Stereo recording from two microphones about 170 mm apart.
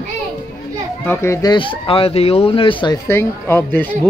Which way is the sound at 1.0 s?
15° left (ahead or behind).